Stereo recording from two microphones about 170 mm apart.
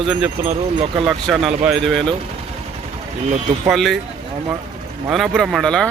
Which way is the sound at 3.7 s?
Centre (ahead or behind).